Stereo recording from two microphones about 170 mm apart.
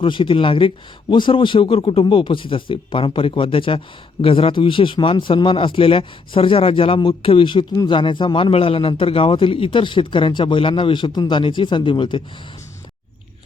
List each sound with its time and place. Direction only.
0.0 s a man's voice: 30° left (ahead or behind)